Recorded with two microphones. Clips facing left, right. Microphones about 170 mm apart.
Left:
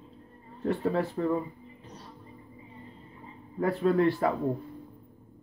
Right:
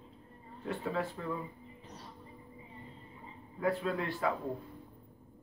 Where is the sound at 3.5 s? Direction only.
45° left (ahead or behind).